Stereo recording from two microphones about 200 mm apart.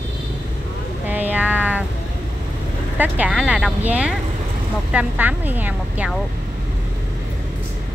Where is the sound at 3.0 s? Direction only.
5° right (ahead or behind).